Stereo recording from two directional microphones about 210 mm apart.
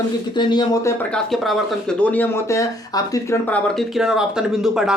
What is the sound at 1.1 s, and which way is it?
Speech, centre (ahead or behind).